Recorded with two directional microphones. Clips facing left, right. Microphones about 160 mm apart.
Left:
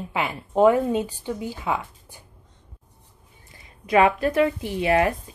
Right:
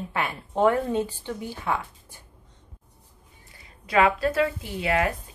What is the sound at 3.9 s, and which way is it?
A woman's voice, 20° left (ahead or behind).